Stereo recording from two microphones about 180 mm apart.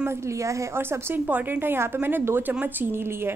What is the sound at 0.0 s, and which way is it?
A woman's voice, 15° right (ahead or behind).